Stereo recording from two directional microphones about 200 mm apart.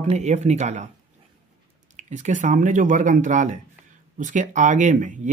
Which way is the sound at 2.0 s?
35° right (ahead or behind).